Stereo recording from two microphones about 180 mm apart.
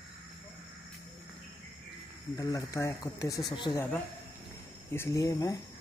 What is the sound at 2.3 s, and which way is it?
Speech, 20° left (ahead or behind).